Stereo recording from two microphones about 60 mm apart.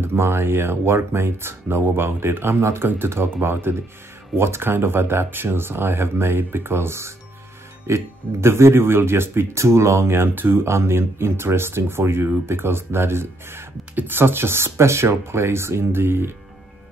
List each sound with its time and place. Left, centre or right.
0.0 s speech: right